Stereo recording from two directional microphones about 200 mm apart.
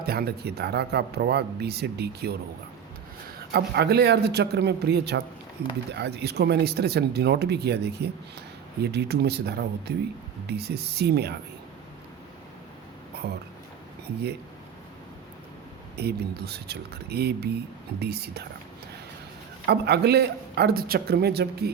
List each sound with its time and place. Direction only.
0.0 s speech: 50° right (ahead or behind)
3.5 s speech: 55° right (ahead or behind)
13.1 s a sound: 55° right (ahead or behind)
16.0 s speech: 55° right (ahead or behind)
19.6 s speech: 55° right (ahead or behind)